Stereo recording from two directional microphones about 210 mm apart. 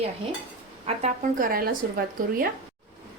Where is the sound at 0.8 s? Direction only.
35° right (ahead or behind).